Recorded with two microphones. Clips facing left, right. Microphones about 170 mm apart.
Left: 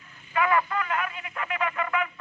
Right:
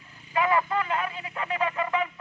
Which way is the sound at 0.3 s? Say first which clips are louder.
Even; 25° right (ahead or behind).